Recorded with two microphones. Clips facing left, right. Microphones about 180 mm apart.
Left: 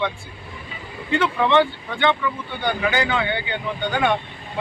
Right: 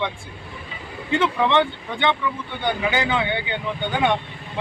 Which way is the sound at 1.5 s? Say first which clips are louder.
Left 2 dB; 20° right (ahead or behind).